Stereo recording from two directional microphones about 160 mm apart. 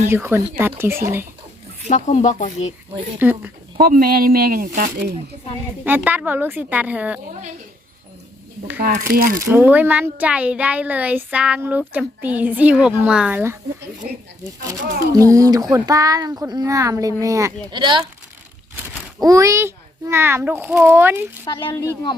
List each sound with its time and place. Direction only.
0.1 s speech: 15° right (ahead or behind)
1.9 s speech: 45° left (ahead or behind)
3.2 s speech: 10° right (ahead or behind)
3.8 s speech: 65° right (ahead or behind)
5.8 s speech: 10° right (ahead or behind)
8.9 s speech: 60° right (ahead or behind)
9.5 s speech: 10° right (ahead or behind)
14.7 s speech: 20° right (ahead or behind)
19.2 s speech: 20° right (ahead or behind)
21.7 s speech: 20° left (ahead or behind)